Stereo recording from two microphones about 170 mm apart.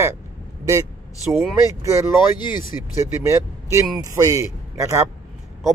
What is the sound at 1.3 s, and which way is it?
Speech, centre (ahead or behind).